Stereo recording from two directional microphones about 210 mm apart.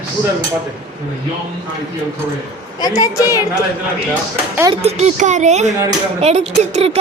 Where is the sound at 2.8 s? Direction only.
20° left (ahead or behind).